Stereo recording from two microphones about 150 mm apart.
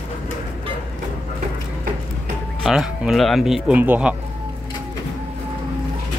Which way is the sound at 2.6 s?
5° right (ahead or behind).